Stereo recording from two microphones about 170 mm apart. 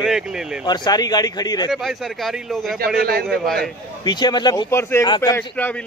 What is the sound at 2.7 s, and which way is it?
Speech, 65° right (ahead or behind).